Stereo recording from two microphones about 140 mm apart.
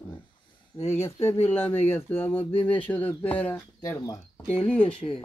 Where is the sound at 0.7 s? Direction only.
50° left (ahead or behind).